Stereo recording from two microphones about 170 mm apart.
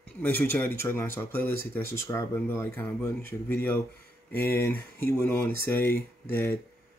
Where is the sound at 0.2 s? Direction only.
10° left (ahead or behind).